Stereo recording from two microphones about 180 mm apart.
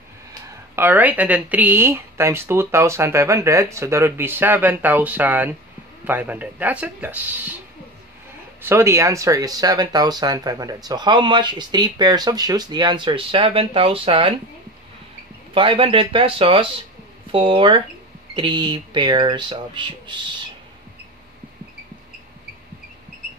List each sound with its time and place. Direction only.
0.5 s a woman's voice: 10° right (ahead or behind)
8.6 s speech: 15° right (ahead or behind); by 14.3 s 30° right (ahead or behind)
15.5 s speech: 30° right (ahead or behind)